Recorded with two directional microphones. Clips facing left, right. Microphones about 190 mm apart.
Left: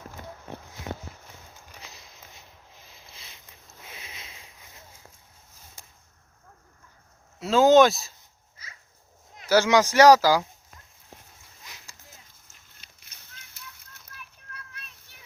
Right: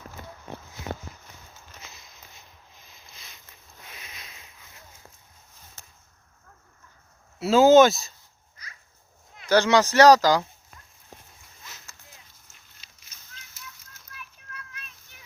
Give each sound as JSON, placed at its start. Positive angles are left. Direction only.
{"t": 3.9, "sound": "sniff", "side_deg": 25}
{"t": 5.8, "sound": "a sound", "side_deg": 10}
{"t": 7.3, "sound": "speech", "side_deg": -5}
{"t": 9.5, "sound": "speech", "side_deg": 10}
{"t": 11.6, "sound": "boat", "side_deg": 15}
{"t": 12.8, "sound": "a sound", "side_deg": 55}
{"t": 14.5, "sound": "children playing", "side_deg": 35}